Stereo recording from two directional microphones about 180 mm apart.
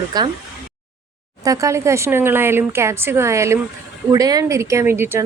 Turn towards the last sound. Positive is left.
turn(degrees=-15)  # may be behind; listen again after turning